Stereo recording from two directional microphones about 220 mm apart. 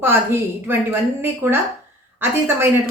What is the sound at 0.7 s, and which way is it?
Speech, 10° right (ahead or behind).